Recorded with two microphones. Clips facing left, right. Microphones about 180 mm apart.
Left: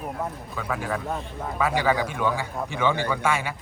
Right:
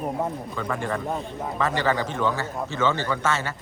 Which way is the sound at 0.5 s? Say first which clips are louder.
Right 1 dB; 5° left (ahead or behind).